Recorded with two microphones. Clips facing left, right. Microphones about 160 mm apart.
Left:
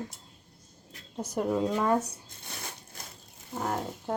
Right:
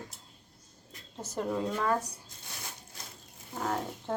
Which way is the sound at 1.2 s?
10° left (ahead or behind).